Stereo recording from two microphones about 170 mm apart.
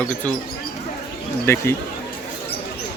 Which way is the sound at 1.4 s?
15° left (ahead or behind).